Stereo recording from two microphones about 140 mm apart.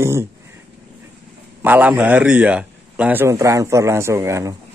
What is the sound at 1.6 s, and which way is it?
A man's voice, 10° right (ahead or behind).